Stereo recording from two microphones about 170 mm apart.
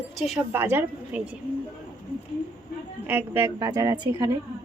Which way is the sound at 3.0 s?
15° right (ahead or behind).